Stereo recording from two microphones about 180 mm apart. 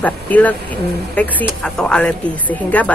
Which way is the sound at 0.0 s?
10° left (ahead or behind).